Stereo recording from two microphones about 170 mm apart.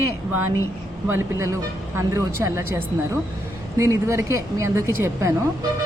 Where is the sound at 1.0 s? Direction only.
15° right (ahead or behind).